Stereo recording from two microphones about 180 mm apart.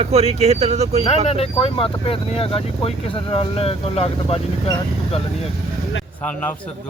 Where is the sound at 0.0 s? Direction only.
35° right (ahead or behind).